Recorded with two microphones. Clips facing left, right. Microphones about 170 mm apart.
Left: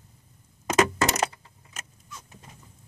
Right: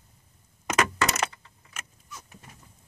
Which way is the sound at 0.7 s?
35° left (ahead or behind).